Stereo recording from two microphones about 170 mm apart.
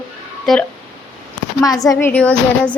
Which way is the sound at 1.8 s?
20° left (ahead or behind).